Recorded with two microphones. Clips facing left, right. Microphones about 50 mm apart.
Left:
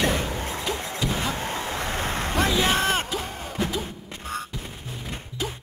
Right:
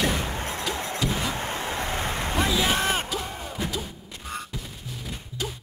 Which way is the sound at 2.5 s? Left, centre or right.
Centre.